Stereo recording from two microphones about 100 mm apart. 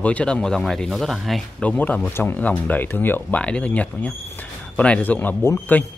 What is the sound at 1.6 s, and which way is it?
Speech, 15° left (ahead or behind).